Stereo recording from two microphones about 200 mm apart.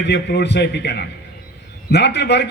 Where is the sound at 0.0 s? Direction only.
60° left (ahead or behind).